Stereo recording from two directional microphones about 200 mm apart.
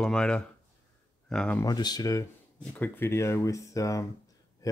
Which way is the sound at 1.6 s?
20° left (ahead or behind).